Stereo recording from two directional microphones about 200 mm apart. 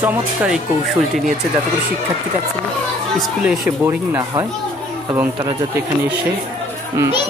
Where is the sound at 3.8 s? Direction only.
15° right (ahead or behind).